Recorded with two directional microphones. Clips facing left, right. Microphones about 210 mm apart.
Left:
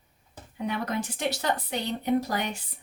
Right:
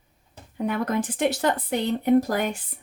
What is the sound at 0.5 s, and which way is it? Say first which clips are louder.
Speech: right 5 dB; 50° right (ahead or behind).